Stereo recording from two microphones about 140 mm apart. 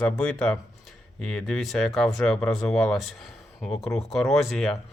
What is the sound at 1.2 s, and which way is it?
Speech, 5° left (ahead or behind).